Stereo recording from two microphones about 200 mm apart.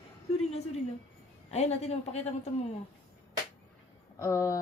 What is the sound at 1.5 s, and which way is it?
A woman's voice, 30° left (ahead or behind).